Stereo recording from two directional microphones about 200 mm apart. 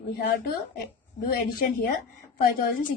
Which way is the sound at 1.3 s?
45° left (ahead or behind).